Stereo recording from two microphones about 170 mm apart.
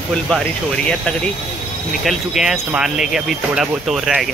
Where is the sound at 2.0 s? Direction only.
Centre (ahead or behind).